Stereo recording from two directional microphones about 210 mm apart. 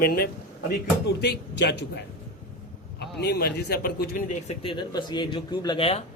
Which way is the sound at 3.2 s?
50° left (ahead or behind).